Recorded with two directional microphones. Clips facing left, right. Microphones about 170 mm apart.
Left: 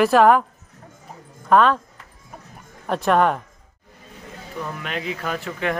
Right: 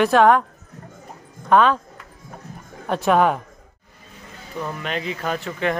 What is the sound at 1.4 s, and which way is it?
Speech, centre (ahead or behind).